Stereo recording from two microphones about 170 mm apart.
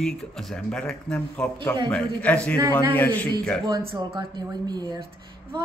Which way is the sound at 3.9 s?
25° right (ahead or behind).